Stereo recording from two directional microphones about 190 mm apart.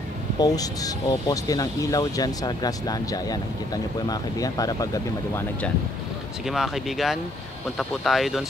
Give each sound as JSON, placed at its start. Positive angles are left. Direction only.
{"t": 0.4, "sound": "speech", "side_deg": 20}
{"t": 6.4, "sound": "speech", "side_deg": 0}